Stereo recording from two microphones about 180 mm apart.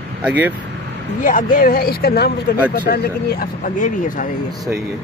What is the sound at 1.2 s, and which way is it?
Speech, 50° left (ahead or behind).